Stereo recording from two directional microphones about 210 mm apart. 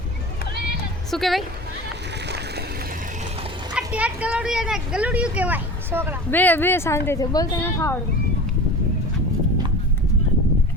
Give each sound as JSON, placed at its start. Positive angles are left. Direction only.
{"t": 1.1, "sound": "a woman's voice", "side_deg": 0}
{"t": 2.2, "sound": "a sound", "side_deg": -50}
{"t": 3.8, "sound": "a child's voice", "side_deg": -5}
{"t": 6.3, "sound": "a woman's voice", "side_deg": 10}